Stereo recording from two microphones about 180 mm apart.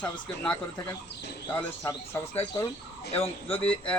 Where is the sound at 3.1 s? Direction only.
35° left (ahead or behind).